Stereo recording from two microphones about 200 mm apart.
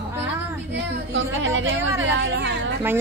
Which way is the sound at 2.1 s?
60° right (ahead or behind).